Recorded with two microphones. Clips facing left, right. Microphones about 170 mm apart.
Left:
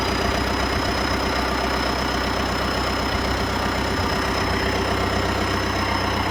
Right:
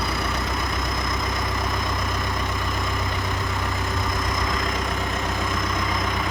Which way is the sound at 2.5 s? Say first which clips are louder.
Left 4 dB; 90° left.